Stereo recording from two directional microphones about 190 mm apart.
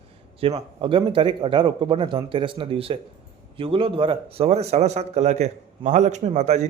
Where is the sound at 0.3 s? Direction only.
30° right (ahead or behind).